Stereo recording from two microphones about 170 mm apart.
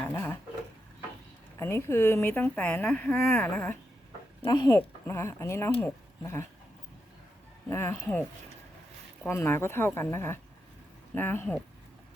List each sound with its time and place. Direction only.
0.1 s a sound: 15° left (ahead or behind)
1.5 s speech: 15° left (ahead or behind)
7.7 s speech: 15° left (ahead or behind)
9.2 s speech: 15° left (ahead or behind)